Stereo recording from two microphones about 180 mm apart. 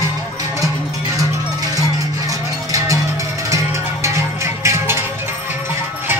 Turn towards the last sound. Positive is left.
turn(degrees=-15)  # may be behind; listen again after turning